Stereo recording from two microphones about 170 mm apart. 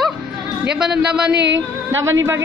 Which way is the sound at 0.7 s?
5° right (ahead or behind).